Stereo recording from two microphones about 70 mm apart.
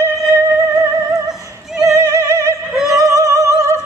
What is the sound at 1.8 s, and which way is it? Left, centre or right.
Opera, right.